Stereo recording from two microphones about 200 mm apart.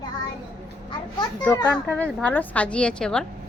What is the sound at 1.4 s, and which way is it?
A child's voice, 10° left (ahead or behind).